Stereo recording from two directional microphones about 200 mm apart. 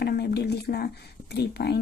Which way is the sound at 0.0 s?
55° left (ahead or behind).